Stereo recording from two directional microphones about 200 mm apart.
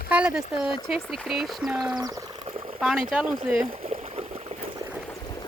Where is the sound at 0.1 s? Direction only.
5° right (ahead or behind).